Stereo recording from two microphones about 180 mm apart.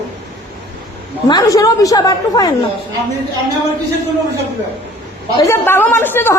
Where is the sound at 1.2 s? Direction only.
20° left (ahead or behind).